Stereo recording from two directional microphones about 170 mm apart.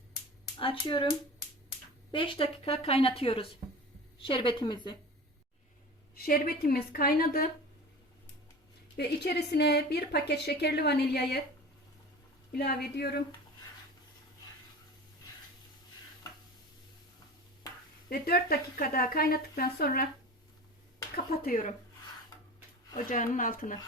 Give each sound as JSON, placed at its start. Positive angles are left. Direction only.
{"t": 0.6, "sound": "a woman's voice", "side_deg": 30}
{"t": 2.1, "sound": "a woman's voice", "side_deg": 30}
{"t": 6.1, "sound": "a woman's voice", "side_deg": 60}
{"t": 9.0, "sound": "a woman's voice", "side_deg": 70}
{"t": 12.5, "sound": "a woman's voice", "side_deg": 65}
{"t": 18.1, "sound": "a woman's voice", "side_deg": 65}
{"t": 21.2, "sound": "a woman's voice", "side_deg": 55}
{"t": 23.0, "sound": "speech", "side_deg": 50}